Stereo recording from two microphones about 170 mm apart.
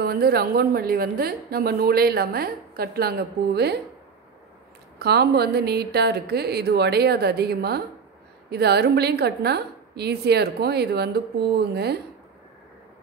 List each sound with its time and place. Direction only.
0.0 s a woman's voice: 65° right (ahead or behind)
4.9 s a woman's voice: 75° right (ahead or behind)